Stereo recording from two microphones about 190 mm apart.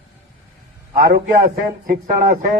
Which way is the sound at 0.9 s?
45° right (ahead or behind).